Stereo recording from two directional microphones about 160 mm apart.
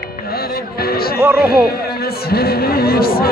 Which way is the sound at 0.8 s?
70° left (ahead or behind).